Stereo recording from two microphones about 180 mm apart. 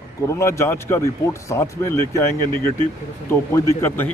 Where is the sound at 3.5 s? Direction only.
10° left (ahead or behind).